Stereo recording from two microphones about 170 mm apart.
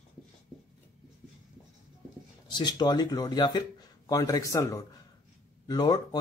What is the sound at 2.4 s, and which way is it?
Speech, 25° left (ahead or behind).